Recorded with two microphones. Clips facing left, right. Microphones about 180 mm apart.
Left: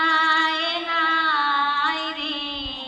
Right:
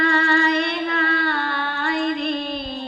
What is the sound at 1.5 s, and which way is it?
Music, 55° right (ahead or behind).